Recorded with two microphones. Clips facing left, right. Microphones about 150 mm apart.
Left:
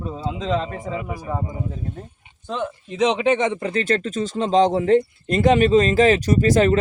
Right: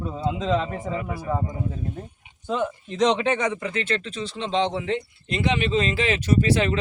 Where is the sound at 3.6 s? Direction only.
40° left (ahead or behind).